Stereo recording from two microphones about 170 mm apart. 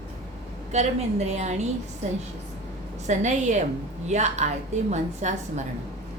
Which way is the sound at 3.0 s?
45° right (ahead or behind).